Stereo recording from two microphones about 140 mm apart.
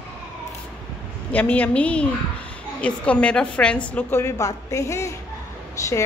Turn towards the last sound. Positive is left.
turn(degrees=25)  # may be behind; listen again after turning